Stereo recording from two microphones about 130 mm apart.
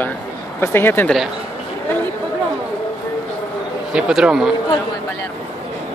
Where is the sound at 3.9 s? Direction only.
5° right (ahead or behind).